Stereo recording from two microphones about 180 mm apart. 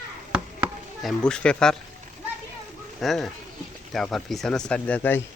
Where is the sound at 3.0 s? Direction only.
Centre (ahead or behind).